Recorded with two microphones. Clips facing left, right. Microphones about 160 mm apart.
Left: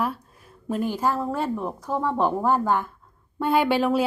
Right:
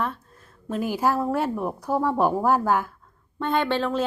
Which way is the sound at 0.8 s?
10° right (ahead or behind).